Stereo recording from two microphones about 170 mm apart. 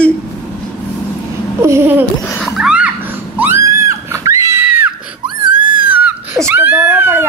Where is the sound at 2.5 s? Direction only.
5° right (ahead or behind).